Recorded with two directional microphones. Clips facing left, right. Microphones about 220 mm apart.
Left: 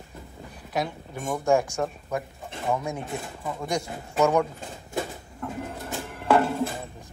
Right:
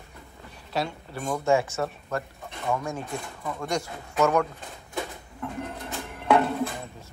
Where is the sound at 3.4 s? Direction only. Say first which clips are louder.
Even; 5° left (ahead or behind).